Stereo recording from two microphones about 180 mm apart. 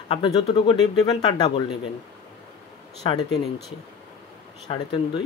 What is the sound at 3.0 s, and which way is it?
Speech, 25° left (ahead or behind).